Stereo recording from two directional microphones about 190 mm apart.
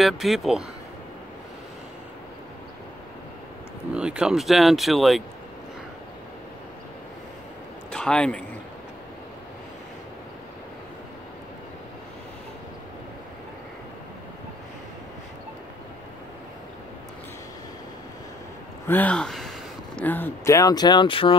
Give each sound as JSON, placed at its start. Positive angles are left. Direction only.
{"t": 0.0, "sound": "speech", "side_deg": 0}
{"t": 3.9, "sound": "speech", "side_deg": -5}
{"t": 7.9, "sound": "a man's voice", "side_deg": 5}
{"t": 18.9, "sound": "speech", "side_deg": 10}